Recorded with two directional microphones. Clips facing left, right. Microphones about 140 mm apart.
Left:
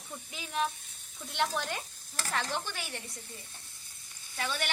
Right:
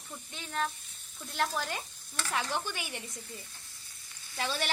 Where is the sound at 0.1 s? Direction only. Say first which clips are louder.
Left 1 dB; 10° left (ahead or behind).